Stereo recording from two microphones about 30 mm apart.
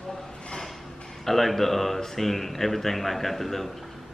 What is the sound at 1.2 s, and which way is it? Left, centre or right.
A man's voice, centre.